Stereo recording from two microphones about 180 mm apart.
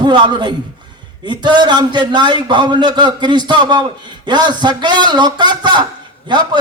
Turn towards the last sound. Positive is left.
turn(degrees=-25)  # may be behind; listen again after turning